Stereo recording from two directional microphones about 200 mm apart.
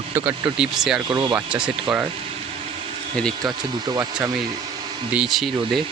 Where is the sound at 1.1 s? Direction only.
20° right (ahead or behind).